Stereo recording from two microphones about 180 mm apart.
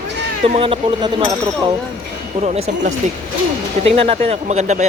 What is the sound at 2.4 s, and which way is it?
Speech, 40° right (ahead or behind).